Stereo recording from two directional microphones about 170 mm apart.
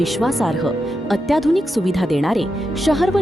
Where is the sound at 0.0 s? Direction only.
Centre (ahead or behind).